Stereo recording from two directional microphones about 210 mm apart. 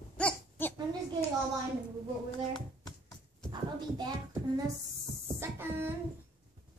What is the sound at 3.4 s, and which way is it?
Speech, 20° right (ahead or behind).